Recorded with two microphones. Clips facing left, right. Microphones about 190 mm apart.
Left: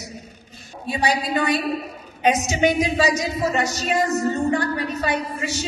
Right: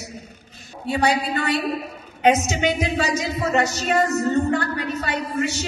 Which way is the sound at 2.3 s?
15° left (ahead or behind).